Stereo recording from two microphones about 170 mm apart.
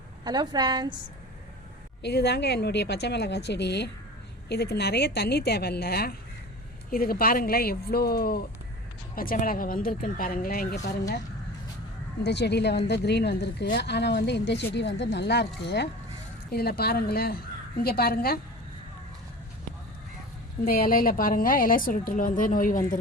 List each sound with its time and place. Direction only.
0.3 s a woman's voice: 25° right (ahead or behind)
2.0 s a woman's voice: 80° left
4.4 s a woman's voice: 70° left (ahead or behind)
12.2 s a woman's voice: 85° left
16.5 s a woman's voice: 65° left (ahead or behind)
20.7 s a woman's voice: 60° left (ahead or behind)